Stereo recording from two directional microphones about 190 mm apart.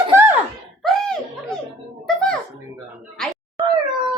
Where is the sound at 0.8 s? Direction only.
Centre (ahead or behind).